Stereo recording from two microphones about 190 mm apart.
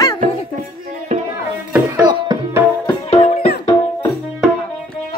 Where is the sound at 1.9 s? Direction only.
20° right (ahead or behind).